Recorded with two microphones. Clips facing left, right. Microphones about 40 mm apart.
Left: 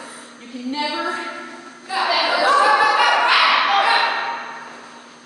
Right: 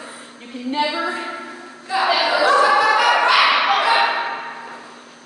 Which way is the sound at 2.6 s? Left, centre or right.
Centre.